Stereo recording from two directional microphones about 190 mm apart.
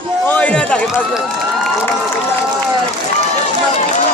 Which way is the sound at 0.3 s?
10° left (ahead or behind).